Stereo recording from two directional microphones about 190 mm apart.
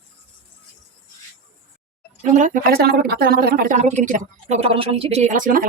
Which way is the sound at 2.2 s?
40° right (ahead or behind).